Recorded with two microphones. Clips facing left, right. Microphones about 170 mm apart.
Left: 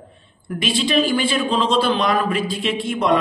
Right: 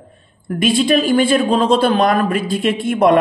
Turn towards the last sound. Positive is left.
turn(degrees=-55)  # may be behind; listen again after turning